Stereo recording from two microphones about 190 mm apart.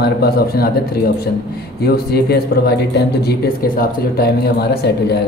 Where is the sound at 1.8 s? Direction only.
55° left (ahead or behind).